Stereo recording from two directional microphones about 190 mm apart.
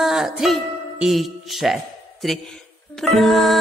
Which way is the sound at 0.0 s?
Centre (ahead or behind).